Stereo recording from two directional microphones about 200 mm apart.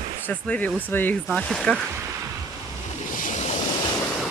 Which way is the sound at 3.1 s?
40° left (ahead or behind).